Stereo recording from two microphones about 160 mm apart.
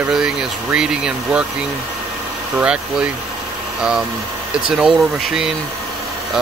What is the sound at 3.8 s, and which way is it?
Speech, 5° right (ahead or behind).